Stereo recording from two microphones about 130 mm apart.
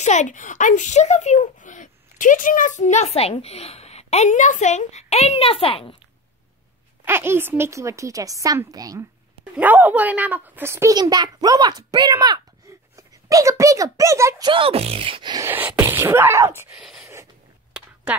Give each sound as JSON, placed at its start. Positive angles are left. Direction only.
{"t": 0.0, "sound": "speech", "side_deg": 65}
{"t": 7.1, "sound": "a woman's voice", "side_deg": -15}
{"t": 9.4, "sound": "a woman's voice", "side_deg": -15}
{"t": 11.0, "sound": "a child's voice", "side_deg": -30}
{"t": 14.5, "sound": "beatboxing", "side_deg": -45}
{"t": 15.3, "sound": "a woman's voice", "side_deg": -15}
{"t": 16.7, "sound": "speech", "side_deg": -5}
{"t": 17.0, "sound": "a sound", "side_deg": -20}
{"t": 17.8, "sound": "a sound", "side_deg": -5}